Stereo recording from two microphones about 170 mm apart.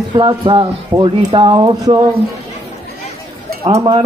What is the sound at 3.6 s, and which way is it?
Speech, 30° right (ahead or behind).